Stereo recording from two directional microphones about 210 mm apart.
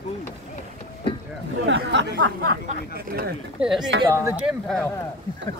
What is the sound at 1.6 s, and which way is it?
Speech, 60° right (ahead or behind).